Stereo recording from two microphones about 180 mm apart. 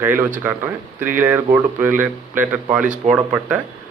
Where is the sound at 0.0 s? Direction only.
10° right (ahead or behind).